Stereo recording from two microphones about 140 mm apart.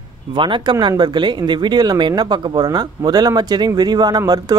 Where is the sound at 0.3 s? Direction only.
35° right (ahead or behind).